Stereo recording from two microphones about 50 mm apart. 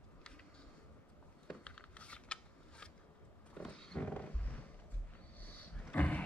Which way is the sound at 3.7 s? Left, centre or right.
Centre.